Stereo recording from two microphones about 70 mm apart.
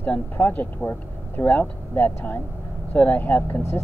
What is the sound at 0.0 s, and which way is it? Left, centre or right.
Speech, left.